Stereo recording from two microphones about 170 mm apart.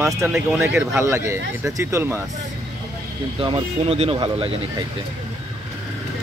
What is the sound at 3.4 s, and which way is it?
Speech, 30° right (ahead or behind).